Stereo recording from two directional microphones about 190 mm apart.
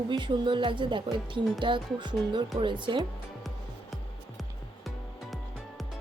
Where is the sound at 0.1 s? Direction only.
25° right (ahead or behind).